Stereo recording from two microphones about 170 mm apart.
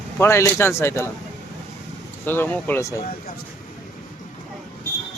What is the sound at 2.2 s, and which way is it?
Speech, 10° left (ahead or behind).